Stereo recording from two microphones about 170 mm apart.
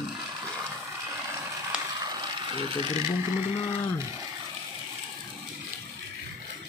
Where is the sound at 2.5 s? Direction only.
25° right (ahead or behind).